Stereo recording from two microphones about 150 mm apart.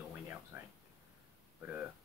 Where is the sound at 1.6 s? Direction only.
10° right (ahead or behind).